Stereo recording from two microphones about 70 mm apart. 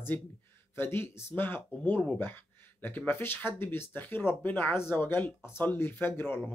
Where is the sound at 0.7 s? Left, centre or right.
Left.